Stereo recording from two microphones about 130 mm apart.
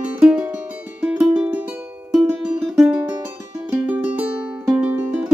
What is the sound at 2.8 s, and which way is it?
Music, 10° right (ahead or behind).